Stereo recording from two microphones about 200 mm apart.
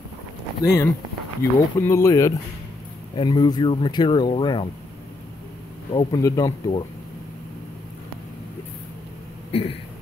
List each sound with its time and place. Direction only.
1.4 s speech: 10° left (ahead or behind)
5.9 s speech: 20° left (ahead or behind)
9.5 s a sound: 30° left (ahead or behind)